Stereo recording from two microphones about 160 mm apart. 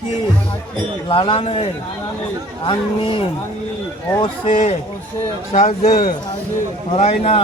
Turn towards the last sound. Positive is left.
turn(degrees=45)  # may be behind; listen again after turning